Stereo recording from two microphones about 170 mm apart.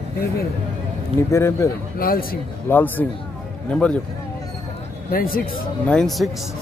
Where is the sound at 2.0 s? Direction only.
60° left (ahead or behind).